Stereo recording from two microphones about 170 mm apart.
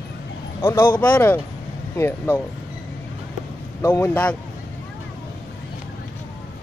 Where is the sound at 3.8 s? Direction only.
15° left (ahead or behind).